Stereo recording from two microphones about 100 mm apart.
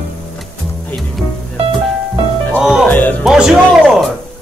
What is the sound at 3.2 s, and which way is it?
Speech, 5° right (ahead or behind).